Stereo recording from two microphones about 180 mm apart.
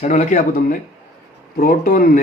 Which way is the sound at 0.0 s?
40° left (ahead or behind).